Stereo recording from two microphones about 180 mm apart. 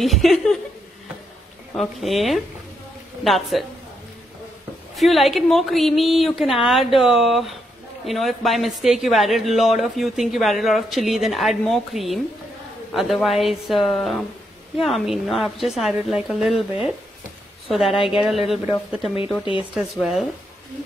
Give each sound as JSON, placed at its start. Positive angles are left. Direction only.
{"t": 0.0, "sound": "a man's voice", "side_deg": 0}
{"t": 1.8, "sound": "a man's voice", "side_deg": 0}
{"t": 4.9, "sound": "a man's voice", "side_deg": 0}
{"t": 19.7, "sound": "a man's voice", "side_deg": 0}